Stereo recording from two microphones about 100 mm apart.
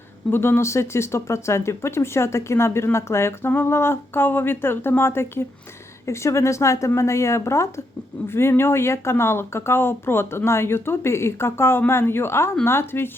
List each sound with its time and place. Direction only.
0.3 s speech: 25° left (ahead or behind)